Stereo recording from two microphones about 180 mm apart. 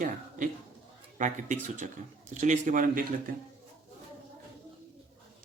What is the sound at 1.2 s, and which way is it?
A man's voice, 45° right (ahead or behind).